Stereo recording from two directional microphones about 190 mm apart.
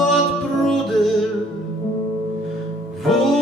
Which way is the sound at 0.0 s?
Centre (ahead or behind).